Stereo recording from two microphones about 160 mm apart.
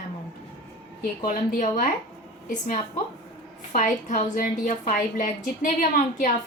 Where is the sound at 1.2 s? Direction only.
50° left (ahead or behind).